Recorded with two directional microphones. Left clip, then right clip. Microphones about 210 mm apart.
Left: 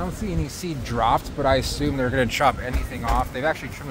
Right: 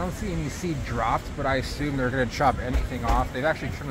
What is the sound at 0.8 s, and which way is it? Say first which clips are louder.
Speech: left 6 dB; 50° left (ahead or behind).